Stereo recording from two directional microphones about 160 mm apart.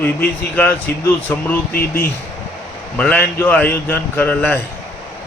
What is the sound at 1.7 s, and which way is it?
Speech, 70° left (ahead or behind).